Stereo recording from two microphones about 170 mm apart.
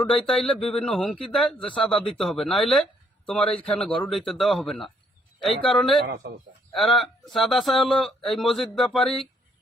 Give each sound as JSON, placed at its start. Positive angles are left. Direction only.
{"t": 0.0, "sound": "speech", "side_deg": 5}
{"t": 6.1, "sound": "a man's voice", "side_deg": -65}
{"t": 6.7, "sound": "speech", "side_deg": 0}